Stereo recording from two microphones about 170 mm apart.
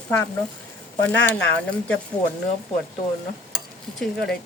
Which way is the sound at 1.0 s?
10° left (ahead or behind).